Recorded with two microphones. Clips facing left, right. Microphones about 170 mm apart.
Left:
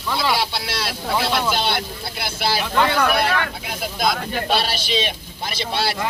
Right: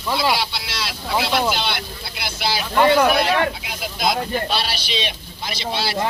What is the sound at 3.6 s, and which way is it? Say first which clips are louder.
Speech: even; 50° left (ahead or behind).